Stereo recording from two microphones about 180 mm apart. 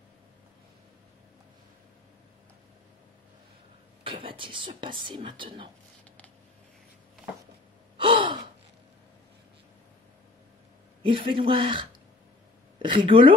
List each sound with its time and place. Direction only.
4.0 s speech: 30° right (ahead or behind)
8.0 s gasp: 25° right (ahead or behind)
11.0 s speech: 30° right (ahead or behind)